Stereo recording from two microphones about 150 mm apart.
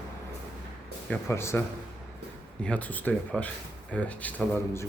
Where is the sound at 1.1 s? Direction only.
15° left (ahead or behind).